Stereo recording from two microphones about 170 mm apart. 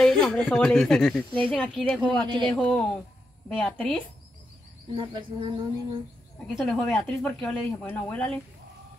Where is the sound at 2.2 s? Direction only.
25° right (ahead or behind).